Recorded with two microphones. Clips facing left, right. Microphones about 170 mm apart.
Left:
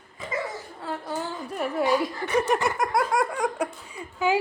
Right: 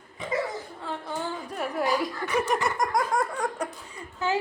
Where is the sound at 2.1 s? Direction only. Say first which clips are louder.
Left 3 dB; 25° left (ahead or behind).